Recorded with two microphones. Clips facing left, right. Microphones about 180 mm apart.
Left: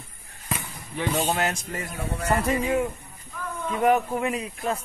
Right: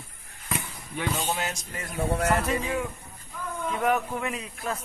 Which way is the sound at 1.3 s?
55° left (ahead or behind).